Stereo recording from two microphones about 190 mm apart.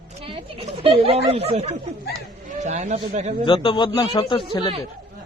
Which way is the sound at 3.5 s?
25° left (ahead or behind).